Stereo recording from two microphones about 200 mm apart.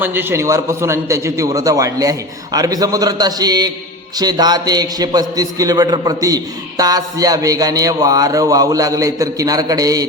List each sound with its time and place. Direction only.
0.0 s a man's voice: 10° right (ahead or behind)